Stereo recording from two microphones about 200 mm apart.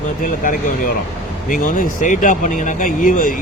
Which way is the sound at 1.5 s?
40° left (ahead or behind).